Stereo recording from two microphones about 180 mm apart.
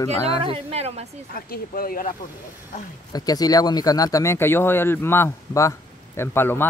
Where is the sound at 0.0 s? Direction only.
15° left (ahead or behind).